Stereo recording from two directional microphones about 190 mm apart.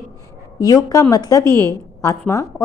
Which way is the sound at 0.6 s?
20° left (ahead or behind).